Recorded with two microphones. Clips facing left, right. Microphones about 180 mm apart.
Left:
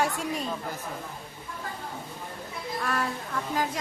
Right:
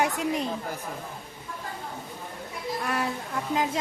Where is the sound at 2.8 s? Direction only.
20° right (ahead or behind).